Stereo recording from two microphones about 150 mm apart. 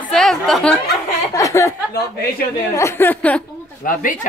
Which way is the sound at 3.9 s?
65° left (ahead or behind).